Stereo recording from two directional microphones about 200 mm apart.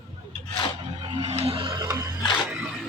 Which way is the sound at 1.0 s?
25° right (ahead or behind).